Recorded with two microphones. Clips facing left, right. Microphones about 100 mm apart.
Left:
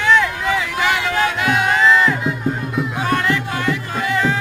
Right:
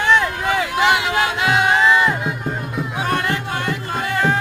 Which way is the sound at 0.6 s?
20° right (ahead or behind).